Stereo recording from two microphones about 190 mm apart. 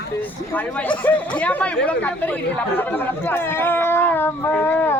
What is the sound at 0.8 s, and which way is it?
Speech, 10° left (ahead or behind).